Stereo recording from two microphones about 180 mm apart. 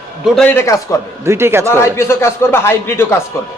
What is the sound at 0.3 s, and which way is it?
Speech, 5° left (ahead or behind).